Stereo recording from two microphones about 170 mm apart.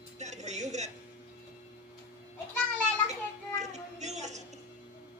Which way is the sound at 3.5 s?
40° right (ahead or behind).